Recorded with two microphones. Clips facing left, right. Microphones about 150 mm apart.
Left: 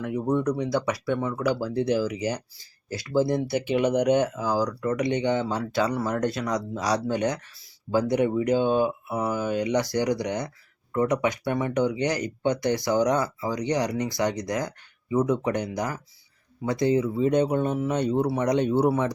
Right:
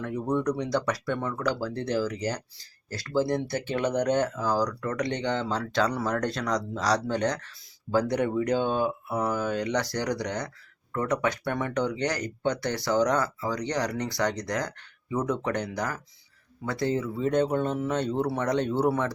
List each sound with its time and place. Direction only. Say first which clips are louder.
0.0 s speech: left 2 dB; 10° left (ahead or behind)